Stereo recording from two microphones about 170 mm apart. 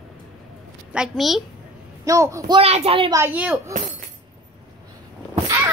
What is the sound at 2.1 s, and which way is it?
Speech, 20° right (ahead or behind).